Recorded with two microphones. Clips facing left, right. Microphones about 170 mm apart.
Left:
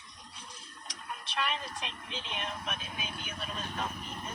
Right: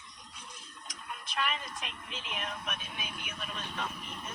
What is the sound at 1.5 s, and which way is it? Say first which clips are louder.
Speech: left 1 dB; 30° left (ahead or behind).